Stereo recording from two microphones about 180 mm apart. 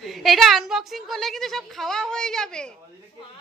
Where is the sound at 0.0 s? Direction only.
Centre (ahead or behind).